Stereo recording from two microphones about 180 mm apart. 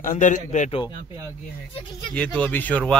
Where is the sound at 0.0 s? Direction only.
45° left (ahead or behind).